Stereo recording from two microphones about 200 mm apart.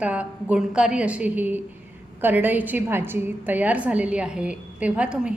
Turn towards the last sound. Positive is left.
turn(degrees=-5)  # may be behind; listen again after turning